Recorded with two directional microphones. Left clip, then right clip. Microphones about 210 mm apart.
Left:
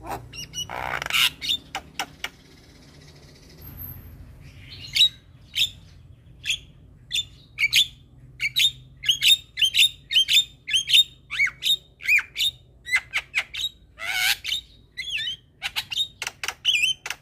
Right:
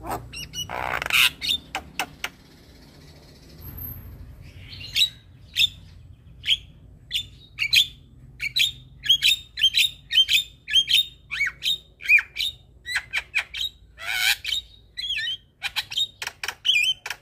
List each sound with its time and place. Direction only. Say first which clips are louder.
0.0 s squawk: right 2 dB; 5° right (ahead or behind)
7.5 s bird: even; 15° left (ahead or behind)